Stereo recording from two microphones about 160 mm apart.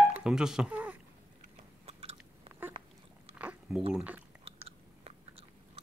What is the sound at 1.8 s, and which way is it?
Biting, 40° right (ahead or behind).